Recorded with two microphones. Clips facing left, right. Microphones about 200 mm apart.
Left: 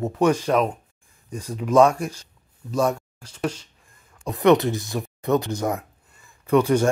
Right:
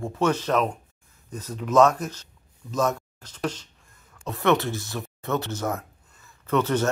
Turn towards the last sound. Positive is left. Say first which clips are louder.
# left 5 dB
turn(degrees=10)  # may be behind; listen again after turning